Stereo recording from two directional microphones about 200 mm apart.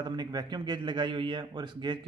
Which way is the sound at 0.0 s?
20° right (ahead or behind).